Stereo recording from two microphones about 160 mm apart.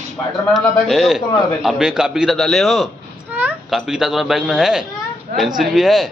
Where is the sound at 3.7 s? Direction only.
Centre (ahead or behind).